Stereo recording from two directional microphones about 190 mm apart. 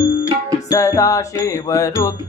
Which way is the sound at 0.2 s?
15° left (ahead or behind).